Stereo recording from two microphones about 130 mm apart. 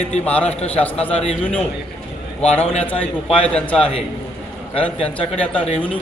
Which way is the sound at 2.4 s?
10° left (ahead or behind).